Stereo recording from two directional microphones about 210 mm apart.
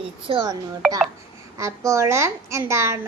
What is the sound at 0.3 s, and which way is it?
Speech, 25° right (ahead or behind).